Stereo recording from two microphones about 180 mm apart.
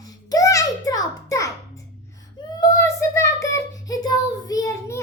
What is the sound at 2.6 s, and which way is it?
Child singing, 20° left (ahead or behind).